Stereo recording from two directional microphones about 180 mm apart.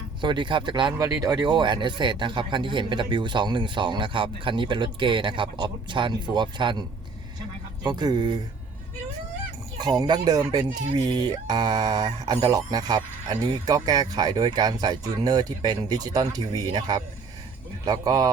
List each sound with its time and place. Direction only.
0.2 s speech: 25° right (ahead or behind)
7.9 s speech: 25° right (ahead or behind)
9.8 s speech: 25° right (ahead or behind)